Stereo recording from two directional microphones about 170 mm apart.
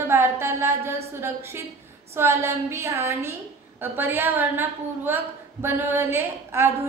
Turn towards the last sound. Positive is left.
turn(degrees=-15)  # may be behind; listen again after turning